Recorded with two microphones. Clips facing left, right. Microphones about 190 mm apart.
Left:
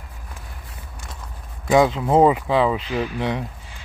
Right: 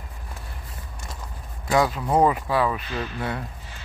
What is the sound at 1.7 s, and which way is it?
Speech, 20° left (ahead or behind).